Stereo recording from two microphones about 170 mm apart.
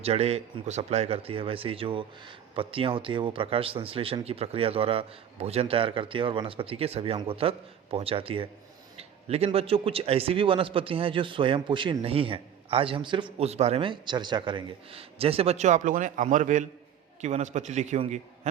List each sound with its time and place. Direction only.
0.0 s speech: 35° right (ahead or behind)
13.4 s a man's voice: 40° right (ahead or behind)